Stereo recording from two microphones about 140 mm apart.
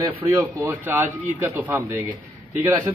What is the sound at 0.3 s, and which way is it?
Speech, 20° right (ahead or behind).